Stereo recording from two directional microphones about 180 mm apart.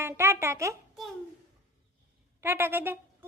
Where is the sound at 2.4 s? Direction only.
10° right (ahead or behind).